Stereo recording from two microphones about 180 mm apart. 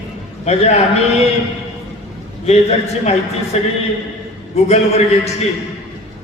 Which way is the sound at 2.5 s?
40° left (ahead or behind).